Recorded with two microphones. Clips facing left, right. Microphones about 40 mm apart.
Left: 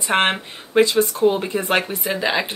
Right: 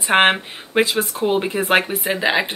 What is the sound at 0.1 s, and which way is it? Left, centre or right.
Speech, right.